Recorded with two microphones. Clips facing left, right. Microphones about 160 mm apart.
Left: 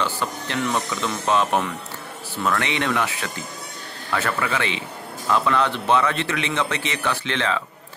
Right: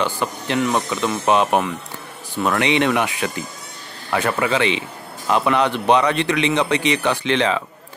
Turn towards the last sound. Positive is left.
turn(degrees=-20)  # may be behind; listen again after turning